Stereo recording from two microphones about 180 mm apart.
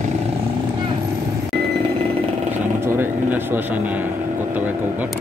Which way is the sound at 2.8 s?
10° right (ahead or behind).